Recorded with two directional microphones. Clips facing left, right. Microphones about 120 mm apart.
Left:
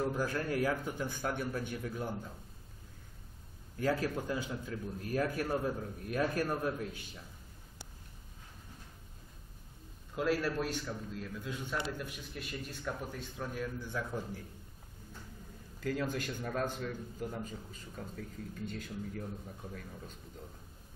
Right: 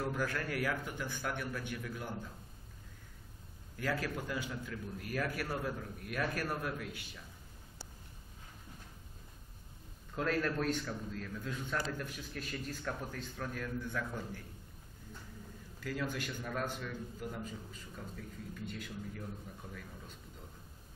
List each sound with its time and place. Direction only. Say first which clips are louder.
0.0 s a man's voice: left 3 dB; 25° left (ahead or behind)
1.0 s a man's voice: left 3 dB; 40° left (ahead or behind)
3.7 s a man's voice: left 4 dB; 30° left (ahead or behind)
10.1 s a man's voice: left 2 dB; 10° left (ahead or behind)
12.4 s speech: right 1 dB; 5° left (ahead or behind)
13.8 s a man's voice: left 1 dB; 30° left (ahead or behind)
15.8 s a man's voice: left 3 dB; 40° left (ahead or behind)